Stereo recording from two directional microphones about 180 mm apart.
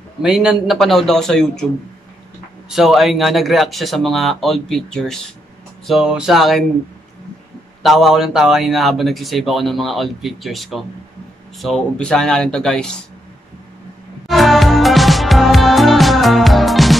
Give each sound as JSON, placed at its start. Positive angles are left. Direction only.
{"t": 0.2, "sound": "speech", "side_deg": -5}
{"t": 2.7, "sound": "speech", "side_deg": 0}
{"t": 7.8, "sound": "speech", "side_deg": 0}
{"t": 14.2, "sound": "music", "side_deg": 0}